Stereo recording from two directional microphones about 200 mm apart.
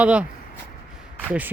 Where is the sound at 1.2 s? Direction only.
10° right (ahead or behind).